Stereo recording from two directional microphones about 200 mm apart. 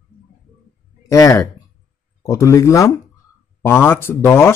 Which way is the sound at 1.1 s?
15° left (ahead or behind).